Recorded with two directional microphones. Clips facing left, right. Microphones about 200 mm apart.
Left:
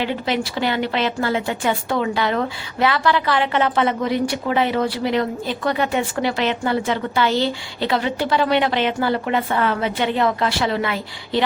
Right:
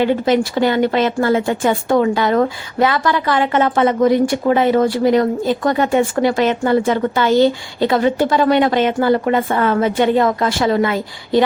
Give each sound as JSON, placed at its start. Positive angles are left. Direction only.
{"t": 0.0, "sound": "a woman's voice", "side_deg": -45}